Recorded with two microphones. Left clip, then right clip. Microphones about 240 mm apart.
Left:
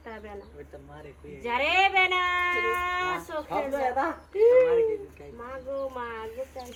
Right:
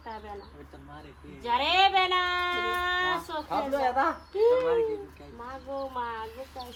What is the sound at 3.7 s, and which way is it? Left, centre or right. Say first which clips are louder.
Speech: right 2 dB; right.